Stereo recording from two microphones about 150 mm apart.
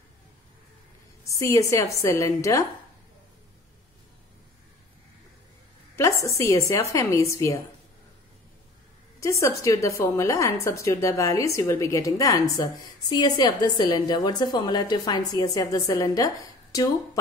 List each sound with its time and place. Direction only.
1.4 s a woman's voice: 20° left (ahead or behind)
5.9 s a woman's voice: 20° left (ahead or behind)
9.2 s a woman's voice: 20° left (ahead or behind)